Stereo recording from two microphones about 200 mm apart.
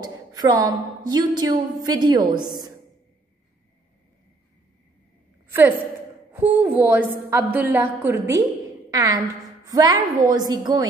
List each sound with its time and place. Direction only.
0.0 s a woman's voice: 20° right (ahead or behind)
5.5 s a woman's voice: 10° right (ahead or behind)
9.7 s a woman's voice: 20° right (ahead or behind)